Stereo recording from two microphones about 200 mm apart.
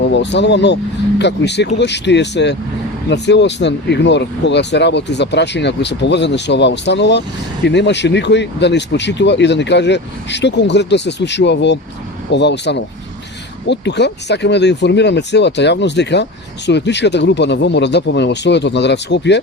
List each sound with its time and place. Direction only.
0.0 s speech: 60° left (ahead or behind)